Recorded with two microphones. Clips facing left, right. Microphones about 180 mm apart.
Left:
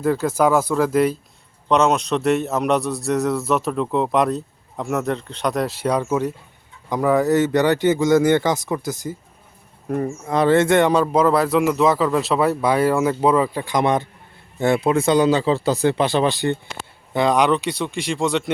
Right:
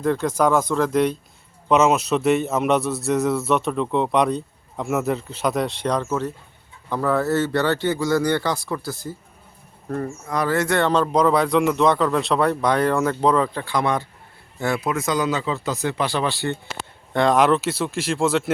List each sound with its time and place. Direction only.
0.0 s a man's voice: 5° left (ahead or behind)
10.2 s a man's voice: 25° left (ahead or behind)
17.1 s a man's voice: centre (ahead or behind)